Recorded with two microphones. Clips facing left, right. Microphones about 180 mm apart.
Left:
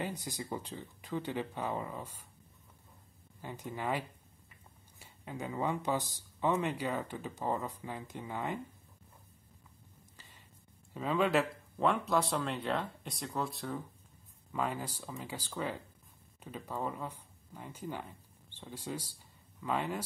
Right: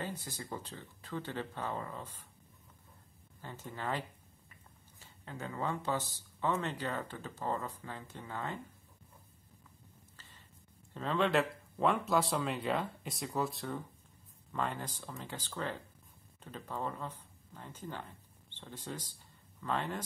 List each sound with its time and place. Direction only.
0.0 s speech: 15° left (ahead or behind)
3.3 s speech: 15° left (ahead or behind)
10.9 s speech: 10° left (ahead or behind)